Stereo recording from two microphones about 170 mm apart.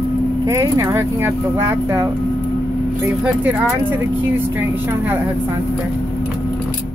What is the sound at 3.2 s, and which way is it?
Speech, 5° right (ahead or behind).